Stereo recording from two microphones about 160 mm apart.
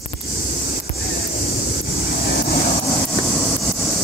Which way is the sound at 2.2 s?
90° left.